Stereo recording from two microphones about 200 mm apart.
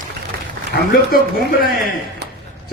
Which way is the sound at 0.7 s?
50° left (ahead or behind).